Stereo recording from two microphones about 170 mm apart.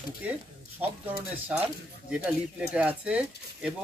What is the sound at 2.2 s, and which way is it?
Speech, 10° right (ahead or behind).